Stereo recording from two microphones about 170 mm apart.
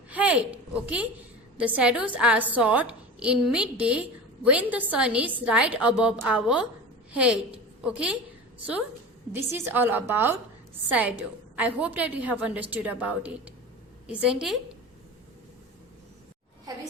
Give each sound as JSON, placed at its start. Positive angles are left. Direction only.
{"t": 0.1, "sound": "a woman's voice", "side_deg": -10}
{"t": 9.3, "sound": "a woman's voice", "side_deg": -15}
{"t": 11.5, "sound": "a woman's voice", "side_deg": -10}
{"t": 16.7, "sound": "a sound", "side_deg": -20}